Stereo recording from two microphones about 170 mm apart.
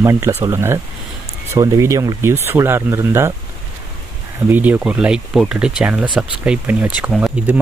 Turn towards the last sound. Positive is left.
turn(degrees=-5)  # may be behind; listen again after turning